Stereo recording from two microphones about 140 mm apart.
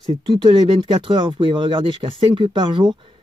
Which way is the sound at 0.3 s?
35° right (ahead or behind).